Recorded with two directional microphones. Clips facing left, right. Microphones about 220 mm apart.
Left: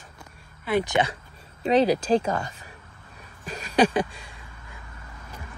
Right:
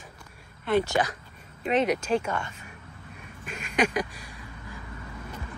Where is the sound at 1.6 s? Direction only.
35° left (ahead or behind).